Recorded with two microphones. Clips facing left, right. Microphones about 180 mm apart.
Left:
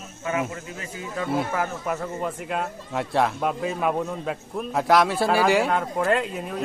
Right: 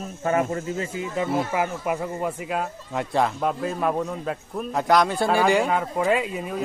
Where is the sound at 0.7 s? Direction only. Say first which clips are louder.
Right 5 dB; 25° right (ahead or behind).